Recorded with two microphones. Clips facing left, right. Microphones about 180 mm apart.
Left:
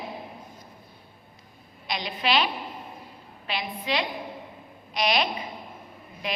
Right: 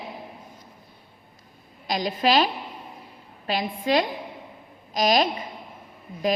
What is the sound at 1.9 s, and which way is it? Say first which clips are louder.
A woman's voice: right 5 dB; 45° right (ahead or behind).